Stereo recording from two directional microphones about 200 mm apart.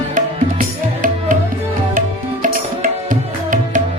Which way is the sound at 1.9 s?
40° right (ahead or behind).